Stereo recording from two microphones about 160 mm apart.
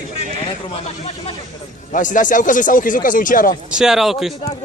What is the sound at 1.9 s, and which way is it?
Speech, 55° left (ahead or behind).